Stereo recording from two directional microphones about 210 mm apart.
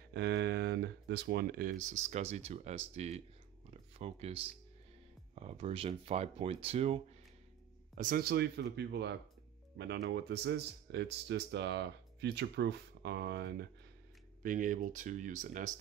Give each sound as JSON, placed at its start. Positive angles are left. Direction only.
{"t": 0.1, "sound": "speech", "side_deg": -55}
{"t": 3.7, "sound": "a sound", "side_deg": -30}
{"t": 5.3, "sound": "speech", "side_deg": -30}
{"t": 8.0, "sound": "speech", "side_deg": -45}
{"t": 14.4, "sound": "speech", "side_deg": -40}